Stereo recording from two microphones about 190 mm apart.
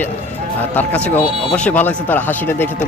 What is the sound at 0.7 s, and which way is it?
Speech, 10° left (ahead or behind).